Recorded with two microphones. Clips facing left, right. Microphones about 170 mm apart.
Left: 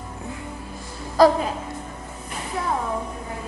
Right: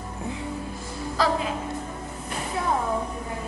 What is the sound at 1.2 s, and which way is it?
Speech, 40° left (ahead or behind).